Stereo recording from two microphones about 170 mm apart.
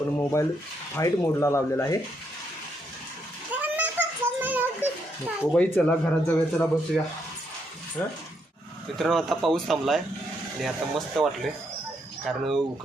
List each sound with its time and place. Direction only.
0.2 s speech: 15° left (ahead or behind)
3.5 s a sound: 10° right (ahead or behind)
5.4 s speech: 10° left (ahead or behind)
9.0 s a man's voice: centre (ahead or behind)